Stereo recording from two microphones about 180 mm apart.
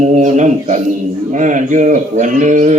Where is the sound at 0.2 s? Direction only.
40° right (ahead or behind).